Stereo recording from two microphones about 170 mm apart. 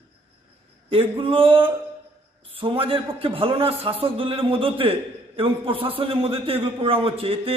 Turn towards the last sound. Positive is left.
turn(degrees=-35)  # may be behind; listen again after turning